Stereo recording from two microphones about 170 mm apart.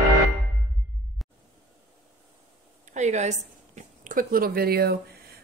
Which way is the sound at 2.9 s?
45° right (ahead or behind).